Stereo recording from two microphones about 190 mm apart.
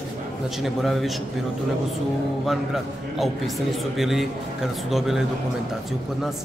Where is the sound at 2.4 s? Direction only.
Centre (ahead or behind).